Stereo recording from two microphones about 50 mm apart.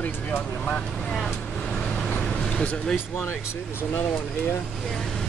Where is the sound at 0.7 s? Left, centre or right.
Left.